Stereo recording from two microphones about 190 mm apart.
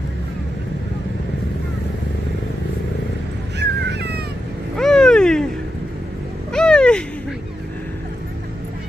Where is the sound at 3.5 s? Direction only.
60° right (ahead or behind).